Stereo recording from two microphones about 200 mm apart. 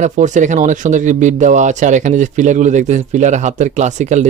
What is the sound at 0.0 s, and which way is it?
Speech, 35° right (ahead or behind).